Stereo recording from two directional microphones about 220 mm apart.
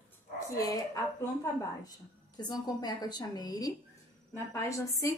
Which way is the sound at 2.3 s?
15° left (ahead or behind).